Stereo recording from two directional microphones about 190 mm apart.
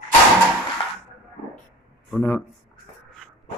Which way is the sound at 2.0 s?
10° left (ahead or behind).